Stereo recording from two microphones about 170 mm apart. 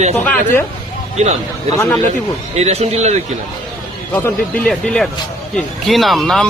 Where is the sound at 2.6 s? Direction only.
40° right (ahead or behind).